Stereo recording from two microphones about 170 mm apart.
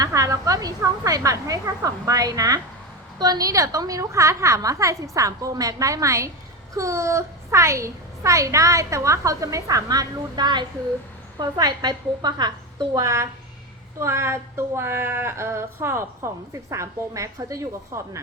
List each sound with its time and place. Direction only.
0.0 s a woman's voice: 20° right (ahead or behind)